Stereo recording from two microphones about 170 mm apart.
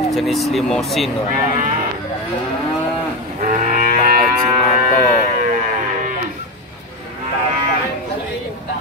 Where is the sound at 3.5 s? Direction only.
50° right (ahead or behind).